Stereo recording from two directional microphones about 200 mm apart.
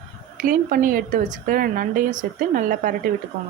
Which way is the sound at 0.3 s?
45° right (ahead or behind).